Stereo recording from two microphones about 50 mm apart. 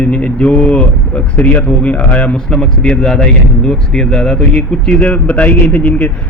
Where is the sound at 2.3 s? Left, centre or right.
Centre.